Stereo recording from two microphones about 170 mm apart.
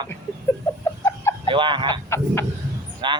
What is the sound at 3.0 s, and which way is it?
Speech, 30° right (ahead or behind).